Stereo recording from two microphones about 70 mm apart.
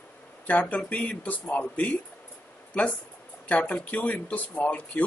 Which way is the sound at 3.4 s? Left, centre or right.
Centre.